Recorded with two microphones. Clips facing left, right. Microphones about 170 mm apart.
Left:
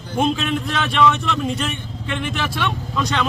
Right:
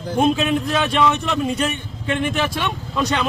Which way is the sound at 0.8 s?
15° right (ahead or behind).